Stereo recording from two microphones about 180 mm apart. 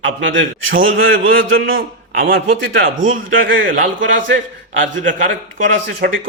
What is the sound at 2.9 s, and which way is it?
A man's voice, 90° right.